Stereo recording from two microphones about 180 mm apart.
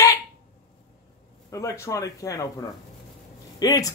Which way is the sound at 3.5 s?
20° left (ahead or behind).